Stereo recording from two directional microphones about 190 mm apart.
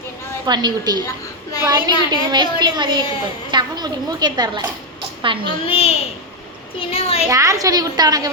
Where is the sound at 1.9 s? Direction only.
25° left (ahead or behind).